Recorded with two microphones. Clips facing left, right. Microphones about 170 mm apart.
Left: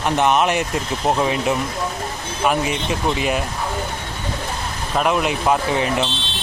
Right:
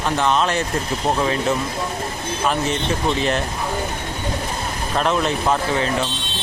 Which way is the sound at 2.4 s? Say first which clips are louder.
Left 2 dB; 10° left (ahead or behind).